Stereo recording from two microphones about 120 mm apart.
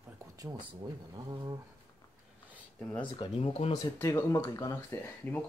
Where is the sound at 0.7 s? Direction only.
45° right (ahead or behind).